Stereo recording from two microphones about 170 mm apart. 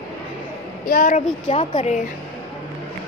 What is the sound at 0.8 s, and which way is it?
Speech, 55° left (ahead or behind).